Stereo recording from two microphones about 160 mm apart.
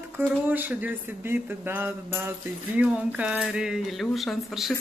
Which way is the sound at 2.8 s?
10° right (ahead or behind).